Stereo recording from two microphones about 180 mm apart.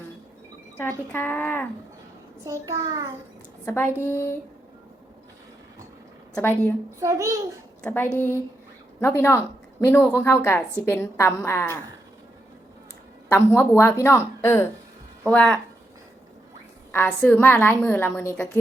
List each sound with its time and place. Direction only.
0.8 s a woman's voice: 15° left (ahead or behind)
2.4 s a child's voice: 20° right (ahead or behind)
3.7 s a woman's voice: 10° left (ahead or behind)
6.3 s a woman's voice: 10° left (ahead or behind)
7.0 s a child's voice: 15° right (ahead or behind)
7.8 s a woman's voice: 10° left (ahead or behind)
13.2 s a woman's voice: 10° left (ahead or behind)
16.9 s a woman's voice: 10° left (ahead or behind)